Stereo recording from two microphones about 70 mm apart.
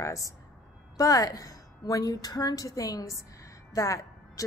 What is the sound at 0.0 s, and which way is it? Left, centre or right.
A woman's voice, left.